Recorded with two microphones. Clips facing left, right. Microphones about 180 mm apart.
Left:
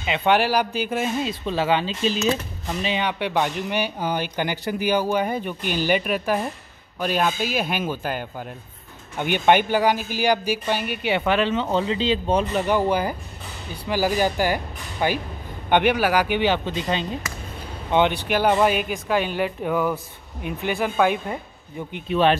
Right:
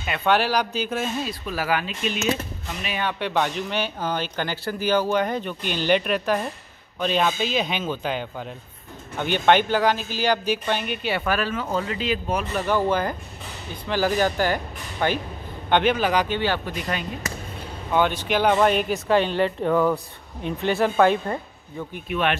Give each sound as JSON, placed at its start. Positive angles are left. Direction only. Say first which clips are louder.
{"t": 0.0, "sound": "speech", "louder": "left 2 dB", "side_deg": 15}
{"t": 1.4, "sound": "speech", "louder": "left 4 dB", "side_deg": 25}
{"t": 2.8, "sound": "speech", "louder": "left 3 dB", "side_deg": 20}
{"t": 12.6, "sound": "speech", "louder": "left 1 dB", "side_deg": 15}
{"t": 18.3, "sound": "speech", "louder": "right 1 dB", "side_deg": 5}
{"t": 21.9, "sound": "speech", "louder": "left 5 dB", "side_deg": 30}